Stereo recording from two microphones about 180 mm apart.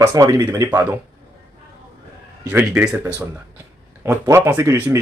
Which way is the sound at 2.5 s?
5° right (ahead or behind).